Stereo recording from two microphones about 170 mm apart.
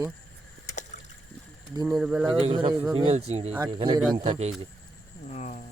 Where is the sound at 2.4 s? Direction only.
30° right (ahead or behind).